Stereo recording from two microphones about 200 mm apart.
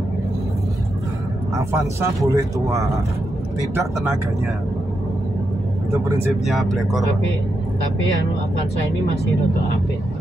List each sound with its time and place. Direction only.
1.7 s speech: 15° right (ahead or behind)
6.4 s speech: centre (ahead or behind)